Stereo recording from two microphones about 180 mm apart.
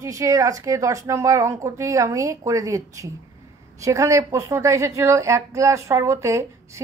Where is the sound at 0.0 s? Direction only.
15° right (ahead or behind).